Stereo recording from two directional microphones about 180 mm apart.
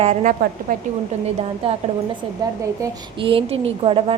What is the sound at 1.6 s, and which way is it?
Speech, 30° right (ahead or behind).